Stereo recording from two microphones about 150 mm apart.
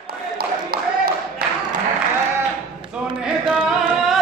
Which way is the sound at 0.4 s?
85° right.